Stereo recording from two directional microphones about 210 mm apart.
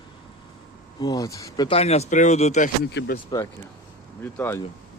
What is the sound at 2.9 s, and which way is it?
Speech, 55° left (ahead or behind).